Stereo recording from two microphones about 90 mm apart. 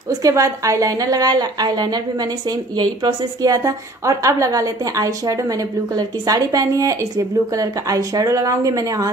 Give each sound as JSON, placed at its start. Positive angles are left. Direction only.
{"t": 0.2, "sound": "a woman's voice", "side_deg": -35}
{"t": 3.5, "sound": "a woman's voice", "side_deg": -40}